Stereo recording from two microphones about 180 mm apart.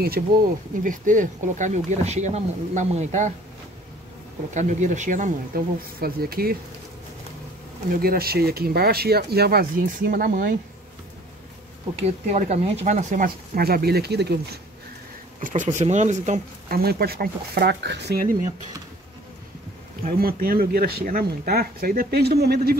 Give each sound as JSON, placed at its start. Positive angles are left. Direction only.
{"t": 0.2, "sound": "speech", "side_deg": -50}
{"t": 4.6, "sound": "speech", "side_deg": -40}
{"t": 7.9, "sound": "speech", "side_deg": -55}
{"t": 12.3, "sound": "speech", "side_deg": -40}
{"t": 15.4, "sound": "speech", "side_deg": -45}
{"t": 20.1, "sound": "speech", "side_deg": -55}